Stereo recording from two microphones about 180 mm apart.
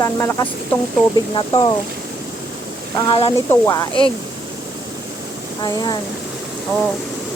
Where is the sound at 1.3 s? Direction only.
25° left (ahead or behind).